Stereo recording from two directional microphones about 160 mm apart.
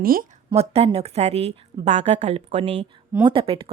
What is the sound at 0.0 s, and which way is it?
Speech, 65° right (ahead or behind).